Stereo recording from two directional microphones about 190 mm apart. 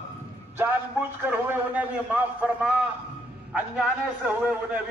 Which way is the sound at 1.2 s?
10° right (ahead or behind).